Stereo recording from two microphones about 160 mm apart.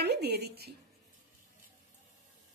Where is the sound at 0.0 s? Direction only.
90° right.